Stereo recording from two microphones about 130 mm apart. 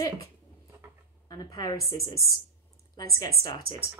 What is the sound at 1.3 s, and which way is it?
A woman's voice, 30° left (ahead or behind).